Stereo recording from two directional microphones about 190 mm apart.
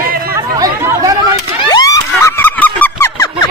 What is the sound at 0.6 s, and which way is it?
Chatter, 20° right (ahead or behind).